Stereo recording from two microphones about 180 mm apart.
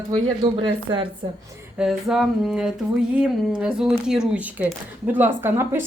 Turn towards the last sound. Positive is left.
turn(degrees=-15)  # may be behind; listen again after turning